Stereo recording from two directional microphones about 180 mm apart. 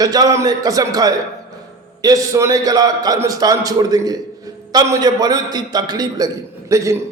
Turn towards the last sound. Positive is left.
turn(degrees=-15)  # may be behind; listen again after turning